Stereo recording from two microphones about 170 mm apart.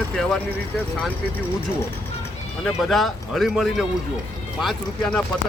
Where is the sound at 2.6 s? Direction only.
Centre (ahead or behind).